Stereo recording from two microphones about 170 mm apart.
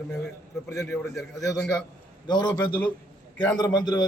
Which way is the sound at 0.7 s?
15° left (ahead or behind).